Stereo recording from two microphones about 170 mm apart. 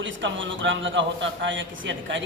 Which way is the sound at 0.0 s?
90° right.